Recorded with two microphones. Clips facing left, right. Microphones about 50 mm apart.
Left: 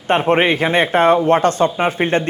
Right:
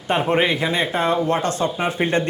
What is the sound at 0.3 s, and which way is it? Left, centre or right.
Speech, left.